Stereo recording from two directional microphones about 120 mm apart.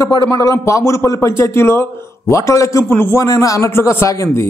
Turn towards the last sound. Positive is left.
turn(degrees=25)  # may be behind; listen again after turning